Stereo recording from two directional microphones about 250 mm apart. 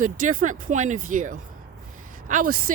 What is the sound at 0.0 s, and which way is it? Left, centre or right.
Speech, right.